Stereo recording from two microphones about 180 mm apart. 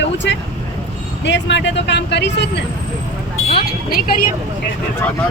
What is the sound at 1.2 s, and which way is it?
Speech, 75° left (ahead or behind).